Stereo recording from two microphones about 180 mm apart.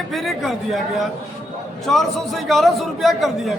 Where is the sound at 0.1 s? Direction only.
Centre (ahead or behind).